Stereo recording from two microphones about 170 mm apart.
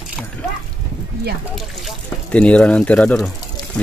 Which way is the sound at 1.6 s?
5° left (ahead or behind).